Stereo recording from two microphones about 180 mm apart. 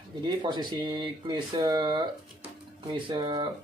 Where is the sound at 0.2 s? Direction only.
25° right (ahead or behind).